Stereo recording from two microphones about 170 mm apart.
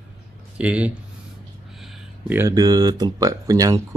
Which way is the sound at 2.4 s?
20° right (ahead or behind).